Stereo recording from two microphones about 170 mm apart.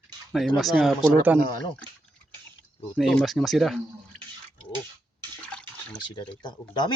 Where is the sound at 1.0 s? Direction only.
10° right (ahead or behind).